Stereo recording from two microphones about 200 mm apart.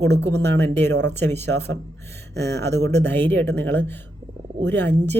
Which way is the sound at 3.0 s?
10° left (ahead or behind).